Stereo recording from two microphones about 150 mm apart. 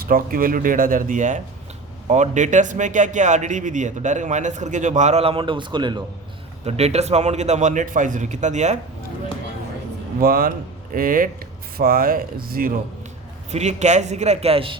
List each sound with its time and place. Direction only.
0.1 s speech: 70° right (ahead or behind); by 6.0 s 30° right (ahead or behind)
6.7 s speech: 45° right (ahead or behind)
10.2 s speech: 75° right (ahead or behind)
13.5 s speech: 50° right (ahead or behind)